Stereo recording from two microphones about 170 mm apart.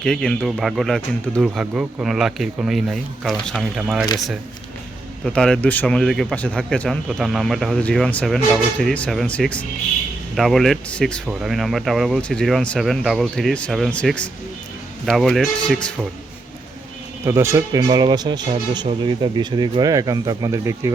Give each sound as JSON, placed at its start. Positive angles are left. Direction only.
{"t": 0.0, "sound": "speech", "side_deg": 5}
{"t": 5.2, "sound": "speech", "side_deg": 5}
{"t": 17.2, "sound": "speech", "side_deg": -15}